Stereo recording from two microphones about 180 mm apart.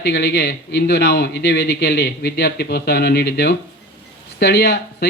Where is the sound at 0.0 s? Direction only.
65° left (ahead or behind).